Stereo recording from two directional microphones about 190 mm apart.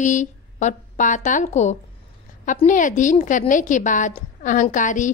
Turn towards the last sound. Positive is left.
turn(degrees=40)  # may be behind; listen again after turning